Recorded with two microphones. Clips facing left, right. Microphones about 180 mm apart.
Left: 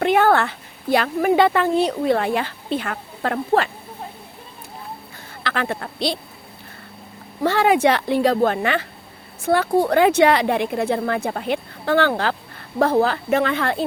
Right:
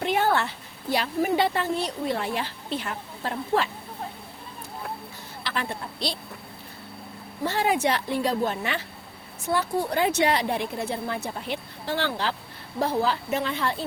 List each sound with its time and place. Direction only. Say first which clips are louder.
0.0 s a sound: left 7 dB; 65° left (ahead or behind)
0.9 s a woman's voice: left 7 dB; 60° left (ahead or behind)
2.8 s speech: left 6 dB; 70° left (ahead or behind)
5.5 s a woman's voice: left 6 dB; 80° left
7.4 s a woman's voice: left 7 dB; 80° left